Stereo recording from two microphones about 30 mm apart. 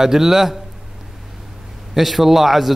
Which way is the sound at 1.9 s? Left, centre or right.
Centre.